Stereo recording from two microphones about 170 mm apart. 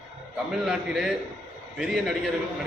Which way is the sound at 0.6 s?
5° right (ahead or behind).